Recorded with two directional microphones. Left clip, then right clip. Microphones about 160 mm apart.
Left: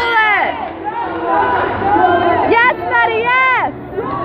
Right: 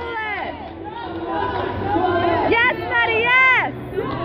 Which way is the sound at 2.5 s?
10° left (ahead or behind).